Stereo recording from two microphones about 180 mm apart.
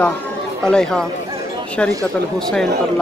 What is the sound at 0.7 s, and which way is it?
Speech, 5° left (ahead or behind).